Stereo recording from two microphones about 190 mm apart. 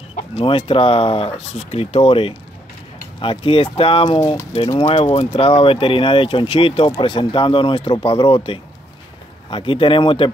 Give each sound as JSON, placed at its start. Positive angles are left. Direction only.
{"t": 0.1, "sound": "speech", "side_deg": 30}
{"t": 4.2, "sound": "speech", "side_deg": 15}
{"t": 4.7, "sound": "speech", "side_deg": 35}